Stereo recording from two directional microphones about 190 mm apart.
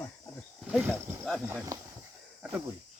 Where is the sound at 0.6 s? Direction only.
5° right (ahead or behind).